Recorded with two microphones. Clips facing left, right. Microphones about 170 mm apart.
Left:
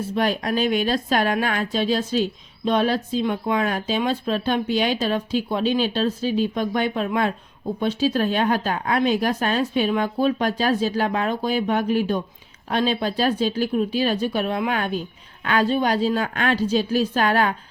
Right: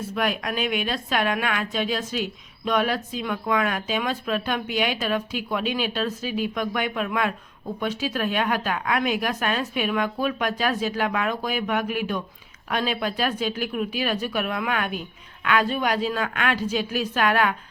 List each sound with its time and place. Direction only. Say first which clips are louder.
0.1 s a woman's voice: left 4 dB; 30° left (ahead or behind)